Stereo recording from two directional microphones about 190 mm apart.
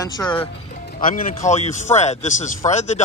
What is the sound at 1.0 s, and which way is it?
A man's voice, 45° left (ahead or behind).